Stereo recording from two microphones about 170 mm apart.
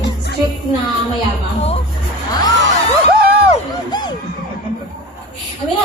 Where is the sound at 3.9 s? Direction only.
25° left (ahead or behind).